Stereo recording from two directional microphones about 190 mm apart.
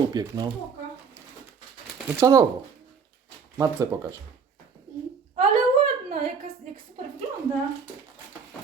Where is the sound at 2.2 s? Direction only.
15° right (ahead or behind).